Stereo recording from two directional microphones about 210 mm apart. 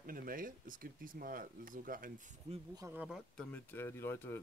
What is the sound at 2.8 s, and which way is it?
Speech, 10° right (ahead or behind).